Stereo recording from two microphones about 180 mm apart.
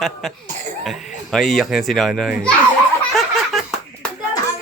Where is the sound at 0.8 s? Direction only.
Centre (ahead or behind).